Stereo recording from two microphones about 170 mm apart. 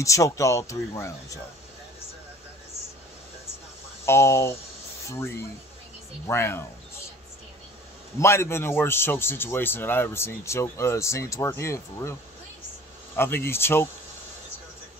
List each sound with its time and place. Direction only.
0.0 s a man's voice: 20° left (ahead or behind)
4.0 s a man's voice: 15° left (ahead or behind)
8.2 s a man's voice: 15° left (ahead or behind)